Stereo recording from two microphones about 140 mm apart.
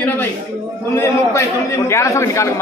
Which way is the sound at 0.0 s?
15° left (ahead or behind).